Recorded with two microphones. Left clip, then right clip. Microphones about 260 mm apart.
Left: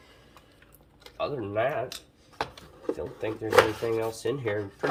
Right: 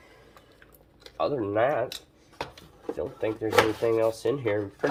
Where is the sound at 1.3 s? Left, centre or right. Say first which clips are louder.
Right 3 dB; centre.